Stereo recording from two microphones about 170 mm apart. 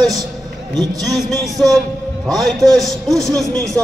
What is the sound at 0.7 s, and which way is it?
Speech, 20° right (ahead or behind).